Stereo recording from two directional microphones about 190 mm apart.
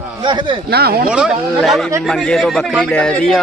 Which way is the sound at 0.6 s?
55° right (ahead or behind).